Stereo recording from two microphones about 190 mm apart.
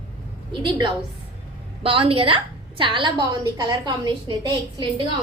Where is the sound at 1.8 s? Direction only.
30° right (ahead or behind).